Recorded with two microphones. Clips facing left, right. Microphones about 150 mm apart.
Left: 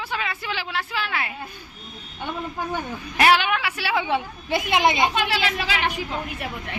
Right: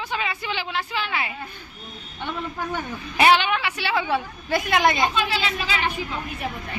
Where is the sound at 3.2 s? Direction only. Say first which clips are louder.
Right 1 dB; 5° left (ahead or behind).